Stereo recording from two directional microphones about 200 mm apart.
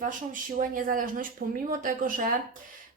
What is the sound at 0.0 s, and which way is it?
A woman's voice, 40° right (ahead or behind).